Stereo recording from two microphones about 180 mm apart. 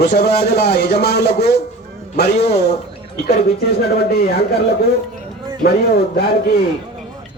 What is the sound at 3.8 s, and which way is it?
Speech, 60° left (ahead or behind).